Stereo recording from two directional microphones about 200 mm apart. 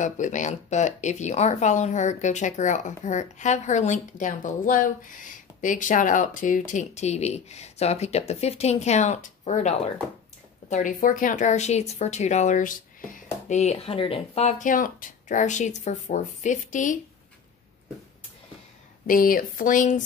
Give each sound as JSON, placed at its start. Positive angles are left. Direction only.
{"t": 0.0, "sound": "speech", "side_deg": 40}
{"t": 19.0, "sound": "speech", "side_deg": 45}